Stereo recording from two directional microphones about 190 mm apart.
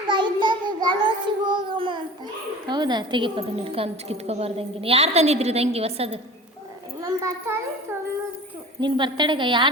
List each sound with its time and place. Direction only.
0.1 s child singing: 25° right (ahead or behind)
2.6 s a woman's voice: 20° right (ahead or behind)
7.0 s a child's voice: 15° right (ahead or behind)
8.8 s a woman's voice: 25° right (ahead or behind)